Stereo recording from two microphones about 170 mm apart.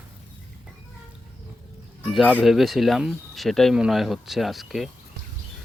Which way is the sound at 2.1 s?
5° right (ahead or behind).